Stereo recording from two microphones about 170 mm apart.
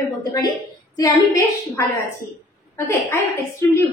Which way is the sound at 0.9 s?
20° left (ahead or behind).